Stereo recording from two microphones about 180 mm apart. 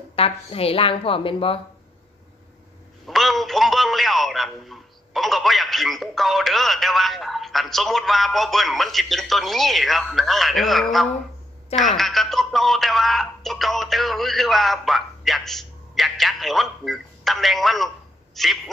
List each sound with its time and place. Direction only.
0.1 s speech: 35° left (ahead or behind)
3.1 s a man's voice: centre (ahead or behind)